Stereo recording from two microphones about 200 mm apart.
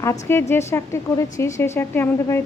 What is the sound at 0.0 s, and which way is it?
A woman's voice, 15° left (ahead or behind).